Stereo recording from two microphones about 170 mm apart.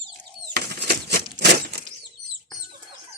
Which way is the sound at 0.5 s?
70° right (ahead or behind).